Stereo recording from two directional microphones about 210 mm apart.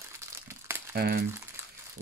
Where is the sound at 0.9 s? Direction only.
50° right (ahead or behind).